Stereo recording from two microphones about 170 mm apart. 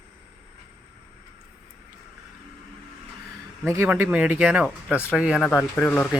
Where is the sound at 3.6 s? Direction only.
15° right (ahead or behind).